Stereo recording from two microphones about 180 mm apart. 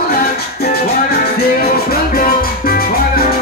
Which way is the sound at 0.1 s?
55° left (ahead or behind).